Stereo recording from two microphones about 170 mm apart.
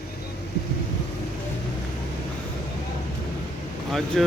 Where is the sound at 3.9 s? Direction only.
Centre (ahead or behind).